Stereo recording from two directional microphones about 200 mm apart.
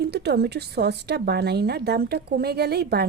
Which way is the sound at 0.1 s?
55° right (ahead or behind).